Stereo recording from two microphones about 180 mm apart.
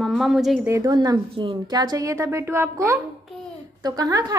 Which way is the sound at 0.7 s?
20° right (ahead or behind).